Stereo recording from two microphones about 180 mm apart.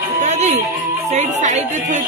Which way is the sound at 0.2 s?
40° right (ahead or behind).